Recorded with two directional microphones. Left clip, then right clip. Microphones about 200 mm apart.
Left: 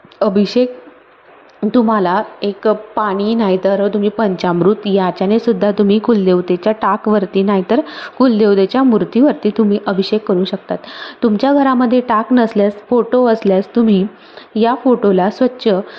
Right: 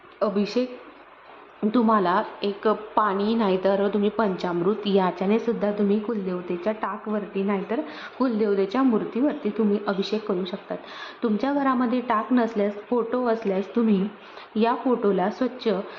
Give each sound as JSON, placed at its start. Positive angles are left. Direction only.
{"t": 0.2, "sound": "a woman's voice", "side_deg": 40}
{"t": 1.7, "sound": "a woman's voice", "side_deg": 30}
{"t": 4.8, "sound": "a woman's voice", "side_deg": 25}